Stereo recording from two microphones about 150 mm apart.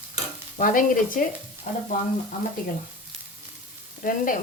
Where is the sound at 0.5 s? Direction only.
65° left (ahead or behind).